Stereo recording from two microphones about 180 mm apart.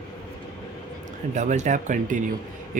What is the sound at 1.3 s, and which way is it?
Speech, 40° right (ahead or behind).